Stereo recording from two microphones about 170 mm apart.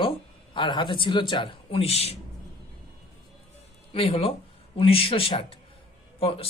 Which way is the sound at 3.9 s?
30° left (ahead or behind).